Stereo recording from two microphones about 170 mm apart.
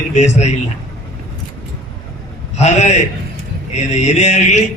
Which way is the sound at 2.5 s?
40° left (ahead or behind).